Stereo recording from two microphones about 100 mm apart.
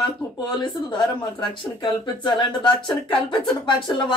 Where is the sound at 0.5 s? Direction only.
50° left (ahead or behind).